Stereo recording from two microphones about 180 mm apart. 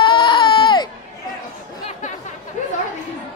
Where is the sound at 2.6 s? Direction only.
40° left (ahead or behind).